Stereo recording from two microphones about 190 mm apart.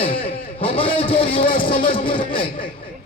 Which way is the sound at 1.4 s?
50° left (ahead or behind).